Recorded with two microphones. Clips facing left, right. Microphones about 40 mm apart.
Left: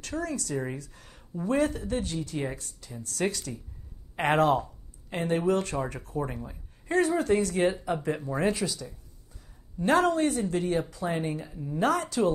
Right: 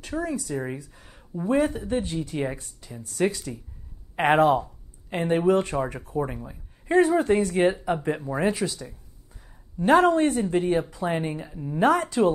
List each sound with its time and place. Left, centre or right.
0.0 s speech: centre
7.0 s speech: right
9.9 s a woman's voice: right